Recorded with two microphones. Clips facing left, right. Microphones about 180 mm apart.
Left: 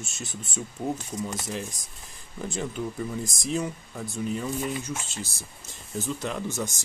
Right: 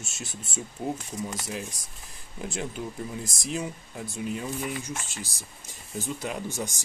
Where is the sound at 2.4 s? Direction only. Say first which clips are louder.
Left 2 dB; 5° right (ahead or behind).